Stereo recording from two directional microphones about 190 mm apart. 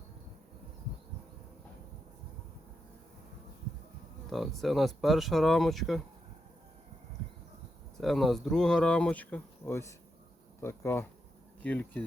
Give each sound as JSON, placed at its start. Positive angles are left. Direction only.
{"t": 4.3, "sound": "speech", "side_deg": 0}
{"t": 7.9, "sound": "speech", "side_deg": 0}